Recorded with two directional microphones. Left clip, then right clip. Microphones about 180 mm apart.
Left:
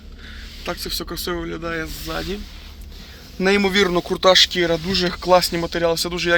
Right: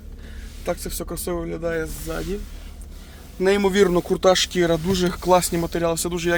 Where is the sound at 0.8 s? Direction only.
10° right (ahead or behind).